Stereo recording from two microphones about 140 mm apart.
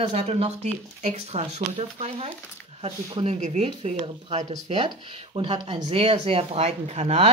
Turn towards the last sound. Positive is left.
turn(degrees=-50)  # may be behind; listen again after turning